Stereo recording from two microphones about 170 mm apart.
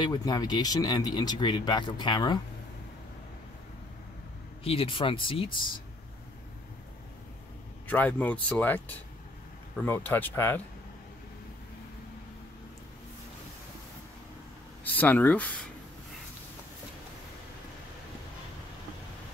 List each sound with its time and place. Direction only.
0.0 s speech: 25° left (ahead or behind)
4.6 s speech: 35° left (ahead or behind)
7.9 s speech: 10° left (ahead or behind)
15.0 s speech: 10° left (ahead or behind)